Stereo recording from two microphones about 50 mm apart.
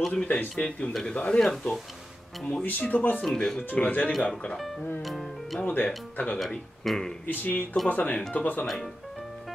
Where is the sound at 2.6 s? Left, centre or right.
Left.